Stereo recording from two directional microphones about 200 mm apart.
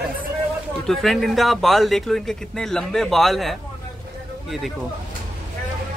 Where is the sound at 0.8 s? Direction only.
Centre (ahead or behind).